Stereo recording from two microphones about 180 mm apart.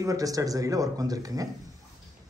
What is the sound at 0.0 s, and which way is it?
Speech, 20° right (ahead or behind).